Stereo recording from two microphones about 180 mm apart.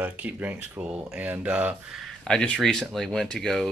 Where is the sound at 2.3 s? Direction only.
5° left (ahead or behind).